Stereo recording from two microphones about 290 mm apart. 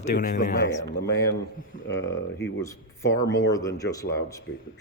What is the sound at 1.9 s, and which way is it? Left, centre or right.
Speech, left.